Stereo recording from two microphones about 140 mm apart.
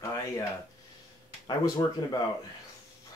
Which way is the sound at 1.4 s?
30° left (ahead or behind).